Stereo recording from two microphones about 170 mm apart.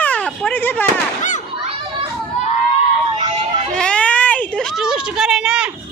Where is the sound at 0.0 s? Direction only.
10° left (ahead or behind).